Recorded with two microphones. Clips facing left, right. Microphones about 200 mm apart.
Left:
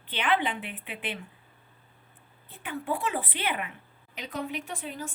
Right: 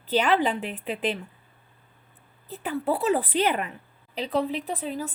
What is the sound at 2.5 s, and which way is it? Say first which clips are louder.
Speech: right 6 dB; 40° right (ahead or behind).